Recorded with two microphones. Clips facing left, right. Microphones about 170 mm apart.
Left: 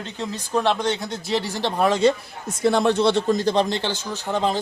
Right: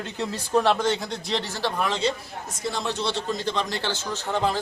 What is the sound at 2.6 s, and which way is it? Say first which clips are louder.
Speech: left 10 dB; 60° left (ahead or behind).